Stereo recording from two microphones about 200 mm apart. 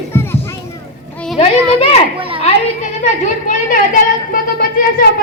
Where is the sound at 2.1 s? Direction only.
25° right (ahead or behind).